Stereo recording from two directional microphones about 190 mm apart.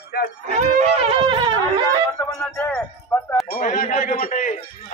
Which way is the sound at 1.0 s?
30° right (ahead or behind).